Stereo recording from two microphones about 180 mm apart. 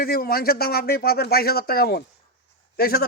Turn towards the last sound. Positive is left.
turn(degrees=60)  # may be behind; listen again after turning